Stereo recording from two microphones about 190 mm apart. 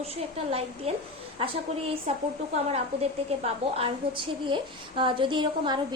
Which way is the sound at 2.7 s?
35° right (ahead or behind).